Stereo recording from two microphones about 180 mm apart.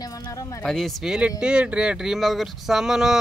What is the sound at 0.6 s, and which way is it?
Speech, centre (ahead or behind).